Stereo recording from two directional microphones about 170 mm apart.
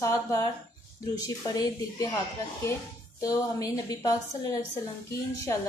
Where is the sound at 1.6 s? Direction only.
20° left (ahead or behind).